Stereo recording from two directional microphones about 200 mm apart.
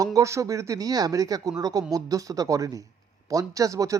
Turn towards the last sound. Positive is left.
turn(degrees=-15)  # may be behind; listen again after turning